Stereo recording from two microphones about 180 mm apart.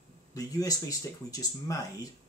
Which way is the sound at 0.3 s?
20° left (ahead or behind).